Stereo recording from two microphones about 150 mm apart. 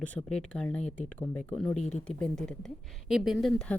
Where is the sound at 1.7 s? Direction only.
50° left (ahead or behind).